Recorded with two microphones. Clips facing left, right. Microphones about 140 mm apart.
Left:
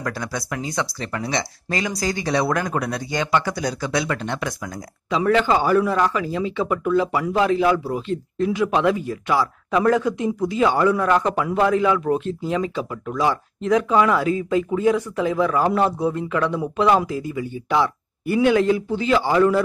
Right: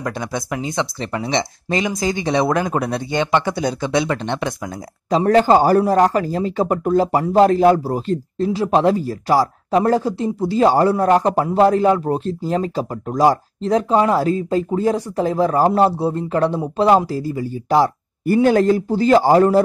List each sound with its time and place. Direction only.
0.0 s speech: 20° right (ahead or behind)
5.1 s speech: 40° right (ahead or behind)